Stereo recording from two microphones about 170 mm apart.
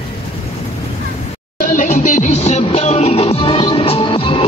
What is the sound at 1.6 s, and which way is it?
Music, 50° left (ahead or behind).